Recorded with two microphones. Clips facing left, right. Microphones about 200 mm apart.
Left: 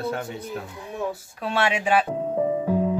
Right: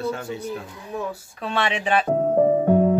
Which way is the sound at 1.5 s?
10° left (ahead or behind).